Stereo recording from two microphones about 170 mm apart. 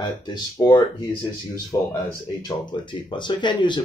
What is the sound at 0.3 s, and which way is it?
Speech, 25° left (ahead or behind).